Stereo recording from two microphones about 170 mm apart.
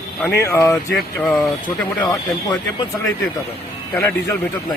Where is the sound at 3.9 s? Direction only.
15° left (ahead or behind).